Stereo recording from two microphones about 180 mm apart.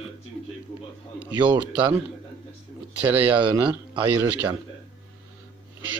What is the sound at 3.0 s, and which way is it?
Speech, 10° right (ahead or behind).